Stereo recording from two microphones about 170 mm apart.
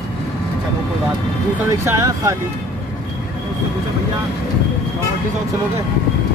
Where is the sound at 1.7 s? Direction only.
20° right (ahead or behind).